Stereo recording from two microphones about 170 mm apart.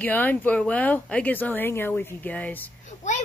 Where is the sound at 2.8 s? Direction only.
45° left (ahead or behind).